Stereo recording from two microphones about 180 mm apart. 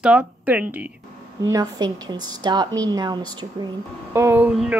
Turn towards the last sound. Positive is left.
turn(degrees=-5)  # may be behind; listen again after turning